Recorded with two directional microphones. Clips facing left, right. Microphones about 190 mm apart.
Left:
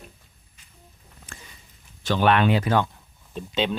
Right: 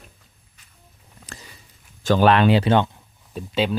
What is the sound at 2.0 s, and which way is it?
Speech, 45° right (ahead or behind).